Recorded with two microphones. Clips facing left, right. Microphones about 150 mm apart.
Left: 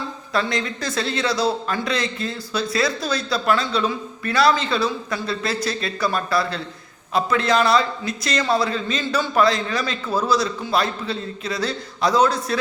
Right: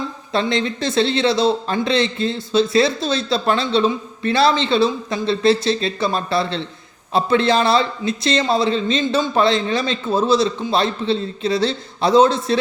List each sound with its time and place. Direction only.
0.3 s a man's voice: 25° right (ahead or behind)